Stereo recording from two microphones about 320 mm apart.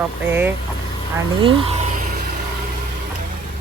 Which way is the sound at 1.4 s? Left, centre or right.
Centre.